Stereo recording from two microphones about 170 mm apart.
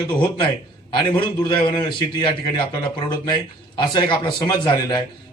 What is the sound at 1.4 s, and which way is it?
A man's voice, 25° left (ahead or behind).